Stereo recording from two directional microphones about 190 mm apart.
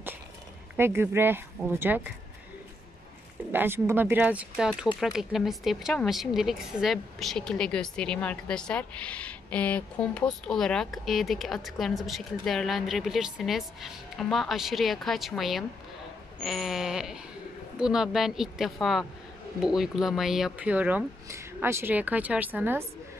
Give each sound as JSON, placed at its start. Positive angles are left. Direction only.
{"t": 0.7, "sound": "speech", "side_deg": -10}
{"t": 3.5, "sound": "speech", "side_deg": -10}